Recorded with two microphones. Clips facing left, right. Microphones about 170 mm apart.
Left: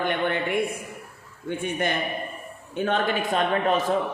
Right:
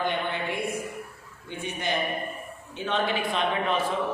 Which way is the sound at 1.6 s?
55° left (ahead or behind).